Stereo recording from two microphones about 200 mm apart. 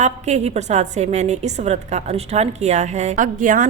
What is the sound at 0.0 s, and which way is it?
A woman's voice, 35° right (ahead or behind).